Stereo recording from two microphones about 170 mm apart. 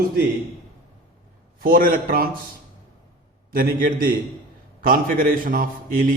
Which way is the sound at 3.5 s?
55° right (ahead or behind).